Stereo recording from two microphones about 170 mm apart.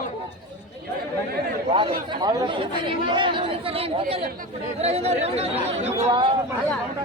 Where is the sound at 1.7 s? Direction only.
25° right (ahead or behind).